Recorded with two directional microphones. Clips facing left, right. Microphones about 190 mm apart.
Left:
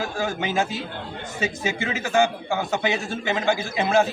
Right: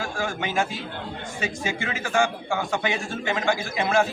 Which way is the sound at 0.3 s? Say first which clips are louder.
Left 1 dB; 30° left (ahead or behind).